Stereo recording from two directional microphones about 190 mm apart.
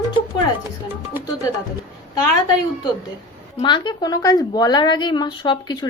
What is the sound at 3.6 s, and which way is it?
Speech, 25° left (ahead or behind).